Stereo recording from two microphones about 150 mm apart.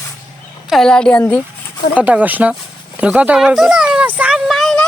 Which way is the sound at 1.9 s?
10° right (ahead or behind).